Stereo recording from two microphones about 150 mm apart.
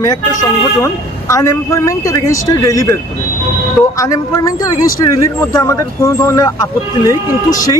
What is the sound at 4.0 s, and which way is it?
Speech, 20° left (ahead or behind).